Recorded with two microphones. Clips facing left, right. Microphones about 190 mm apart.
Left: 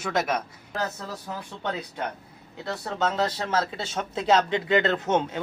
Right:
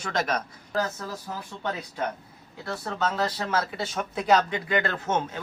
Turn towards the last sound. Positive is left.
turn(degrees=20)  # may be behind; listen again after turning